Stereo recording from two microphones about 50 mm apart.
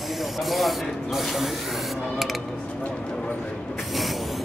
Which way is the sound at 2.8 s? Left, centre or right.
Left.